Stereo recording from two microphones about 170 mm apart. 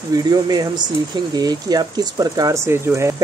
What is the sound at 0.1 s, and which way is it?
Speech, 25° right (ahead or behind).